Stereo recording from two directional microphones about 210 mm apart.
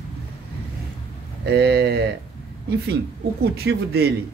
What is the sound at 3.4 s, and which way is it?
Speech, 50° right (ahead or behind).